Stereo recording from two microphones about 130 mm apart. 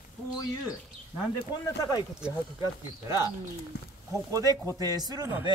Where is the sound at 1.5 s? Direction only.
30° left (ahead or behind).